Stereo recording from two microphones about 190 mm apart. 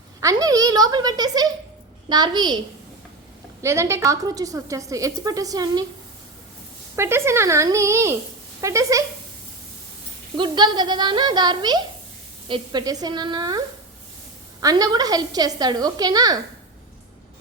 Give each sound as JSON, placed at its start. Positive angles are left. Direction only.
{"t": 0.2, "sound": "a woman's voice", "side_deg": -20}
{"t": 3.6, "sound": "a woman's voice", "side_deg": -15}
{"t": 6.9, "sound": "a woman's voice", "side_deg": -15}
{"t": 10.3, "sound": "a woman's voice", "side_deg": -25}
{"t": 14.6, "sound": "a woman's voice", "side_deg": -20}